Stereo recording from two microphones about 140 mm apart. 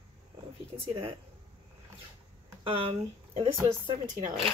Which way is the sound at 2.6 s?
40° right (ahead or behind).